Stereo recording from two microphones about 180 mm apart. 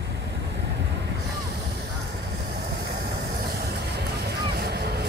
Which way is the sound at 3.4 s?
60° right (ahead or behind).